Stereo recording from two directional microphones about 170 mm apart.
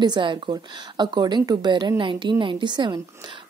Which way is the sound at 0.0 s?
25° right (ahead or behind).